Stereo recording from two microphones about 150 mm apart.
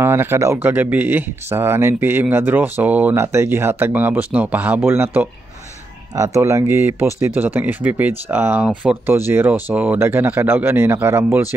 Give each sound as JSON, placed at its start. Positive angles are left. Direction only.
{"t": 0.0, "sound": "speech", "side_deg": -15}